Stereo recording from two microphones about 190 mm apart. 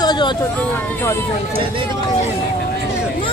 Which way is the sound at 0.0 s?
25° left (ahead or behind).